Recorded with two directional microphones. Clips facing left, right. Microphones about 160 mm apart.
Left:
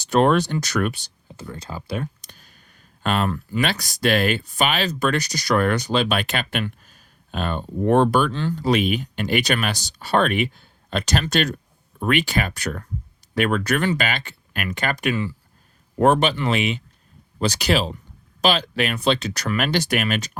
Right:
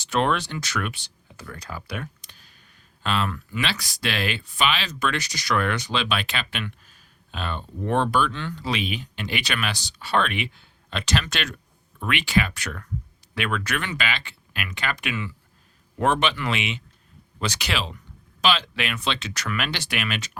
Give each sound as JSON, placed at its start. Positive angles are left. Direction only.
{"t": 0.0, "sound": "speech", "side_deg": 40}
{"t": 1.4, "sound": "speech", "side_deg": 25}
{"t": 2.2, "sound": "clicking", "side_deg": 45}
{"t": 3.7, "sound": "speech", "side_deg": 40}